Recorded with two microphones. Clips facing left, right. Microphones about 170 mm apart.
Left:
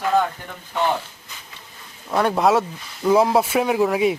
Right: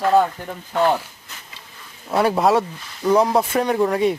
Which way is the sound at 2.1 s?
5° right (ahead or behind).